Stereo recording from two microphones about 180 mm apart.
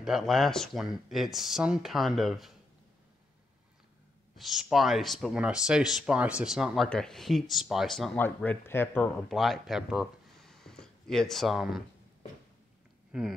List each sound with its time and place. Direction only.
0.0 s speech: centre (ahead or behind)
4.4 s speech: centre (ahead or behind)
9.3 s speech: centre (ahead or behind)
13.1 s speech: 5° right (ahead or behind)